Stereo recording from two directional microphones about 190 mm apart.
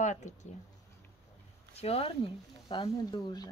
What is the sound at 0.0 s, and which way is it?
Speech, 40° left (ahead or behind).